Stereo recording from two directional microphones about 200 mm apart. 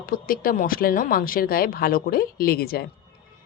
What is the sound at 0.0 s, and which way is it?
Speech, 45° left (ahead or behind).